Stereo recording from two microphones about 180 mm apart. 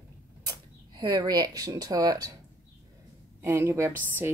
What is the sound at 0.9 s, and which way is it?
Speech, 20° right (ahead or behind).